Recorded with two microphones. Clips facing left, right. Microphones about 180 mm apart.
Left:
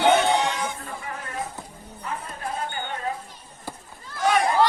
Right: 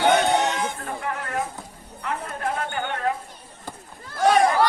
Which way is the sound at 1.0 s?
65° right (ahead or behind).